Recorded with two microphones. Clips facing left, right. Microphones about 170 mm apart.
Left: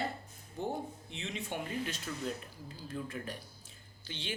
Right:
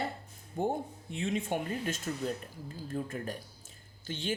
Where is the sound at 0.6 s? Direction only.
50° right (ahead or behind).